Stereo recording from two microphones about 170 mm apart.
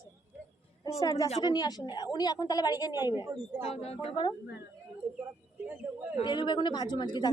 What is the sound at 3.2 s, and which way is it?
Speech, 15° right (ahead or behind).